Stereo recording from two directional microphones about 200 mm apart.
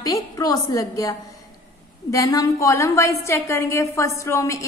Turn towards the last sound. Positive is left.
turn(degrees=15)  # may be behind; listen again after turning